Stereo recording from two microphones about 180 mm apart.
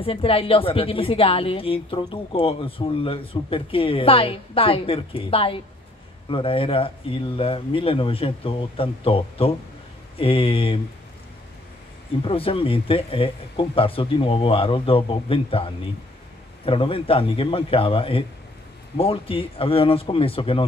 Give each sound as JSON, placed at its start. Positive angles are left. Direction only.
{"t": 0.0, "sound": "speech", "side_deg": 30}
{"t": 12.3, "sound": "speech", "side_deg": 30}